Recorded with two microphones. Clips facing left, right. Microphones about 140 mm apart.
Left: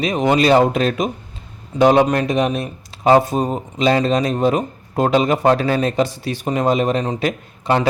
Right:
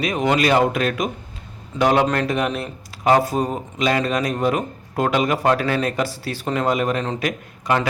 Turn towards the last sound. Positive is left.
turn(degrees=30)  # may be behind; listen again after turning